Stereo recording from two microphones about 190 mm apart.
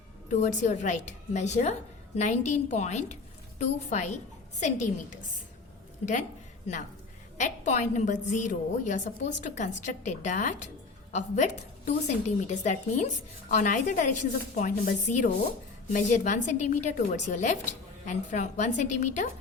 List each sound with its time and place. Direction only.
0.3 s a woman's voice: 40° left (ahead or behind)
7.3 s a woman's voice: 40° left (ahead or behind)